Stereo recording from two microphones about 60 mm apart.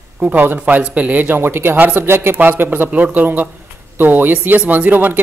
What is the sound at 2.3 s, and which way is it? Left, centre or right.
Speech, right.